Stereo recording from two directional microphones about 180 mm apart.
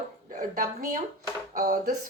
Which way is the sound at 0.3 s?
55° right (ahead or behind).